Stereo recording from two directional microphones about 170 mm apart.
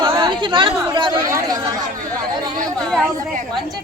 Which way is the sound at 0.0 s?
25° right (ahead or behind).